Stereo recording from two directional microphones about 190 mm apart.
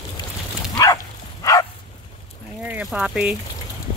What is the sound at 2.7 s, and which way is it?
Speech, 5° right (ahead or behind).